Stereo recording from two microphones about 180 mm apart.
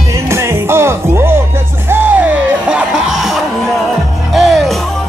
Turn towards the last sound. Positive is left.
turn(degrees=0)  # may be behind; listen again after turning